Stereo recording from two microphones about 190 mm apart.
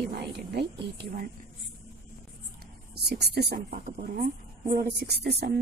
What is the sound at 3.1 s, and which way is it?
Speech, 60° right (ahead or behind).